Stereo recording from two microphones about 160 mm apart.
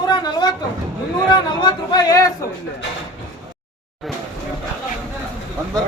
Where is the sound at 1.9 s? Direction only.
20° left (ahead or behind).